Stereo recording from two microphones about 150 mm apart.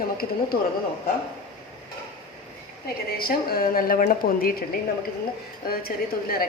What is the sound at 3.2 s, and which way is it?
A woman's voice, 85° left.